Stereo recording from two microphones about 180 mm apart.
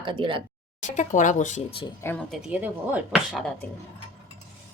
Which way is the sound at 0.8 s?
40° left (ahead or behind).